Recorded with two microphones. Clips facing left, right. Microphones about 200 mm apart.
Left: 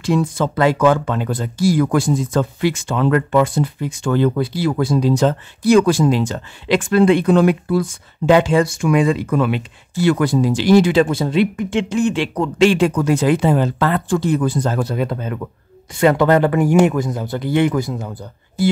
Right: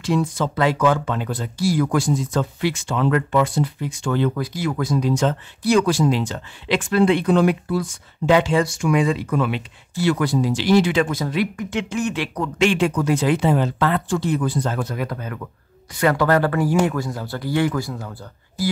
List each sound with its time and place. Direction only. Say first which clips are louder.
0.0 s speech: left 3 dB; 50° left (ahead or behind)
4.4 s speech: left 5 dB; 30° left (ahead or behind)
5.7 s speech: left 4 dB; 50° left (ahead or behind); by 18.1 s 20° left (ahead or behind)